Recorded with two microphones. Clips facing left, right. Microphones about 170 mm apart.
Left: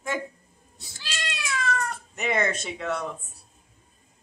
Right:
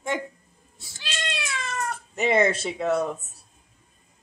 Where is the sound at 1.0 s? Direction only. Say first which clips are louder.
Right 3 dB; 25° right (ahead or behind).